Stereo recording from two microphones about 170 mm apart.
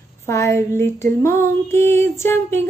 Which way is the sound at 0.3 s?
15° left (ahead or behind).